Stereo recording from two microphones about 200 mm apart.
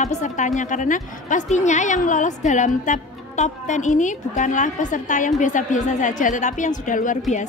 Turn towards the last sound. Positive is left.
turn(degrees=40)  # may be behind; listen again after turning